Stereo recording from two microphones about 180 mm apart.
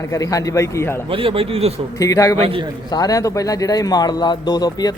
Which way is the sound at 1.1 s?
30° right (ahead or behind).